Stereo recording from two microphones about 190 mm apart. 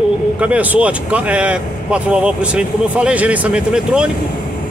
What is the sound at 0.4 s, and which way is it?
Speech, 5° right (ahead or behind).